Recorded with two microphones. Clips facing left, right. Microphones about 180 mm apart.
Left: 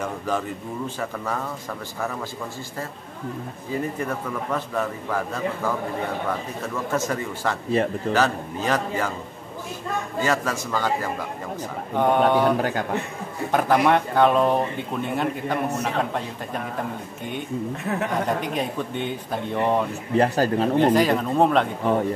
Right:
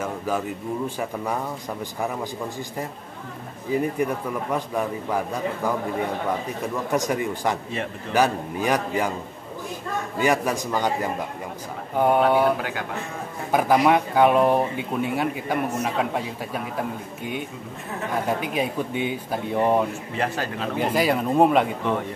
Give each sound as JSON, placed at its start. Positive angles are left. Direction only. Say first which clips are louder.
{"t": 0.8, "sound": "speech", "louder": "right 1 dB", "side_deg": -15}
{"t": 4.0, "sound": "speech", "louder": "right 3 dB", "side_deg": -15}
{"t": 7.7, "sound": "speech", "louder": "left 8 dB", "side_deg": 35}
{"t": 8.1, "sound": "speech", "louder": "right 6 dB", "side_deg": -15}
{"t": 10.2, "sound": "speech", "louder": "right 4 dB", "side_deg": -15}
{"t": 11.9, "sound": "speech", "louder": "even", "side_deg": -10}
{"t": 13.5, "sound": "speech", "louder": "right 1 dB", "side_deg": -10}
{"t": 18.4, "sound": "speech", "louder": "right 1 dB", "side_deg": -5}
{"t": 20.2, "sound": "speech", "louder": "left 8 dB", "side_deg": 40}
{"t": 20.8, "sound": "speech", "louder": "even", "side_deg": -10}